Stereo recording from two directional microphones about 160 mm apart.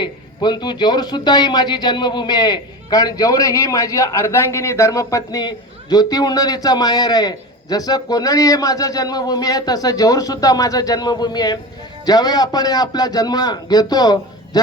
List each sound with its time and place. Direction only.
0.0 s a man's voice: 25° left (ahead or behind)